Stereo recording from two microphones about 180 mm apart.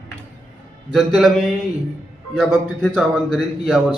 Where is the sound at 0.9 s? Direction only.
Centre (ahead or behind).